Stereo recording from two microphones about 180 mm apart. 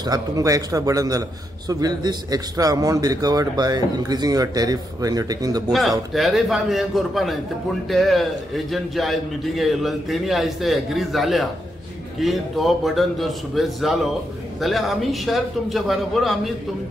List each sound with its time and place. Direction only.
0.0 s a man's voice: 20° right (ahead or behind)
5.7 s a man's voice: centre (ahead or behind)